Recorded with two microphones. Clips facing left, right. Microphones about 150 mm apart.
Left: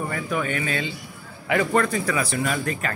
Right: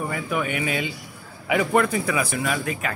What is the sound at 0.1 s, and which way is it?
Speech, 10° right (ahead or behind).